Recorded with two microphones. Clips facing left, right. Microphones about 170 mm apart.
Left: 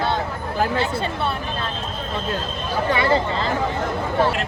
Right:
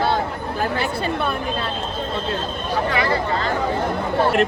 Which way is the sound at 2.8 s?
30° left (ahead or behind).